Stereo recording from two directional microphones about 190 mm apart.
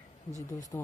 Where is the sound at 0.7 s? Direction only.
15° left (ahead or behind).